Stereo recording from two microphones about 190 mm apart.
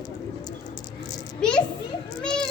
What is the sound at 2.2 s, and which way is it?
Children playing, 5° left (ahead or behind).